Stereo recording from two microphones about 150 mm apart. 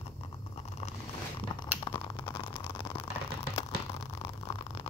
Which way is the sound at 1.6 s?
30° left (ahead or behind).